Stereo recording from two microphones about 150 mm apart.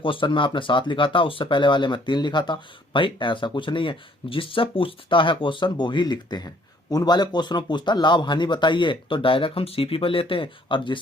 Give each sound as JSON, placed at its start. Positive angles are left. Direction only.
{"t": 0.0, "sound": "speech", "side_deg": 35}